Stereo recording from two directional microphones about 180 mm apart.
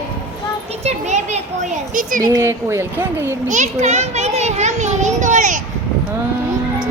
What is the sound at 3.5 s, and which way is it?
Children playing, 40° right (ahead or behind).